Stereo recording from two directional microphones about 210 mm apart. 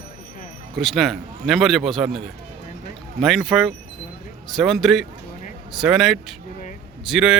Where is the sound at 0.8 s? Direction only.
Centre (ahead or behind).